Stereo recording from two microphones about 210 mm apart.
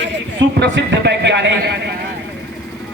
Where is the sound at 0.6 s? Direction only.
55° right (ahead or behind).